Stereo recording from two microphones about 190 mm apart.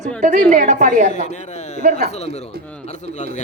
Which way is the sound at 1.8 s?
45° right (ahead or behind).